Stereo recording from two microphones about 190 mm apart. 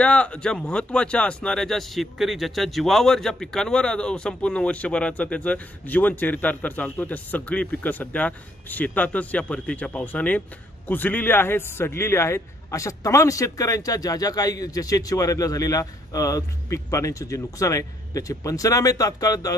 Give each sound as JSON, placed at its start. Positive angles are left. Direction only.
{"t": 0.0, "sound": "speech", "side_deg": 5}